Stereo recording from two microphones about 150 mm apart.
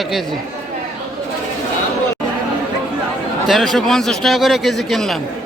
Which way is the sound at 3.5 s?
Centre (ahead or behind).